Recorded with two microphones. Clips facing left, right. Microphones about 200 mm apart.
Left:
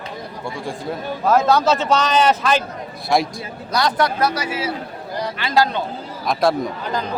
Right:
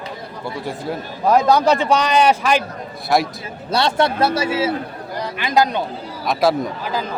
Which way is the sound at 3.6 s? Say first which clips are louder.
Right 2 dB; 25° right (ahead or behind).